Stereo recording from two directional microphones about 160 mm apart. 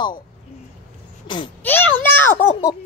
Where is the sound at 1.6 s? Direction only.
10° left (ahead or behind).